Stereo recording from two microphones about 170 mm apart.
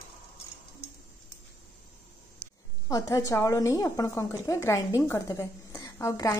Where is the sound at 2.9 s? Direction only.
20° left (ahead or behind).